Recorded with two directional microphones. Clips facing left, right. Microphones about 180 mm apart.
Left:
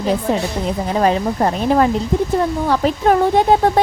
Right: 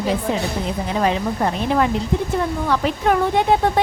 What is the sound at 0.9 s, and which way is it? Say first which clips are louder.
A woman's voice: left 4 dB; 40° left (ahead or behind).